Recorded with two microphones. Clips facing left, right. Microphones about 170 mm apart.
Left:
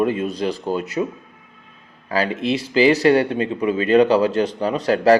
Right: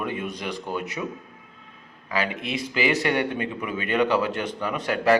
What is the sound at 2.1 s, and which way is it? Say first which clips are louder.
Speech: left 7 dB; 35° left (ahead or behind).